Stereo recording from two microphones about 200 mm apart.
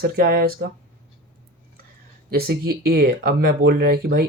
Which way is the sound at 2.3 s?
50° right (ahead or behind).